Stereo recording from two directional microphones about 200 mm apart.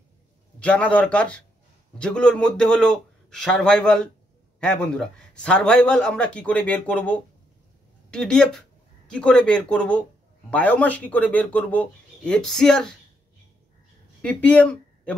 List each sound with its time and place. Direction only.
0.6 s a man's voice: 5° left (ahead or behind)
14.2 s speech: 5° left (ahead or behind)